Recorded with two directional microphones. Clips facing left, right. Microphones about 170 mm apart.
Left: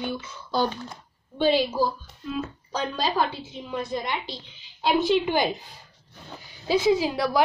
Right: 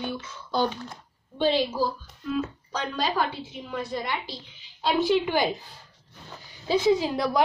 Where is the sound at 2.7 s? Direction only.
25° left (ahead or behind).